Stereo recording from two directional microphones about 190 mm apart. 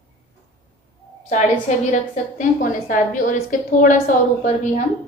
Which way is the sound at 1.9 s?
40° left (ahead or behind).